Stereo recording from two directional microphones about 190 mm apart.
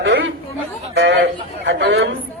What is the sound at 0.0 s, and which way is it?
Chatter, 70° right (ahead or behind).